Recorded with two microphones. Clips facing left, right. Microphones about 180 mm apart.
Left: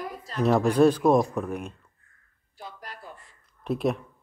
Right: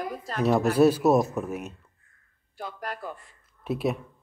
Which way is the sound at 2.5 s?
60° right (ahead or behind).